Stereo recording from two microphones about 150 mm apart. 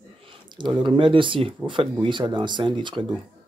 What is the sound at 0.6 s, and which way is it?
Speech, 30° right (ahead or behind).